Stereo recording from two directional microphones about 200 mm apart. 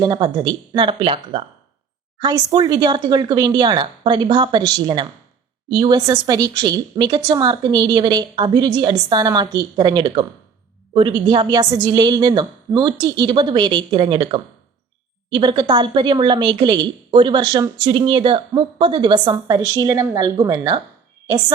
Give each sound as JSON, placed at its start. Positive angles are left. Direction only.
{"t": 0.0, "sound": "a woman's voice", "side_deg": -20}